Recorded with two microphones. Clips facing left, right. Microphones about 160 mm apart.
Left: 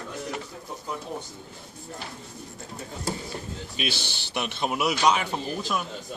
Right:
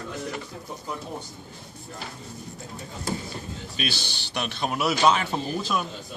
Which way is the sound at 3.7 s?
20° left (ahead or behind).